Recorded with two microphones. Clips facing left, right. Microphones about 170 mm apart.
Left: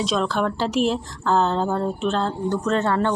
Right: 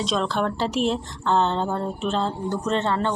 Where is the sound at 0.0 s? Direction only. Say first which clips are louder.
Left 2 dB; centre (ahead or behind).